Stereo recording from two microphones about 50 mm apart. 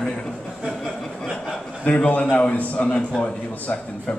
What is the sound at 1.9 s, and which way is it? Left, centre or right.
A man's voice, left.